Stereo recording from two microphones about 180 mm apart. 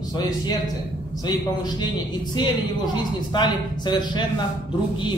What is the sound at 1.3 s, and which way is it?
Speech, 20° left (ahead or behind).